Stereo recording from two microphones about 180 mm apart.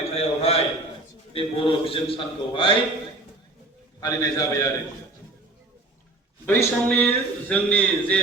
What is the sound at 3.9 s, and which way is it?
Speech, 20° left (ahead or behind).